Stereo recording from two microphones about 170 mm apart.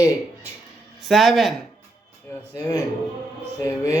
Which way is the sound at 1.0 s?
Centre (ahead or behind).